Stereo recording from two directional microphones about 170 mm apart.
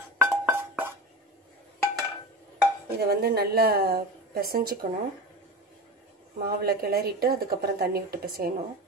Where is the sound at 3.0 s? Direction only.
65° right (ahead or behind).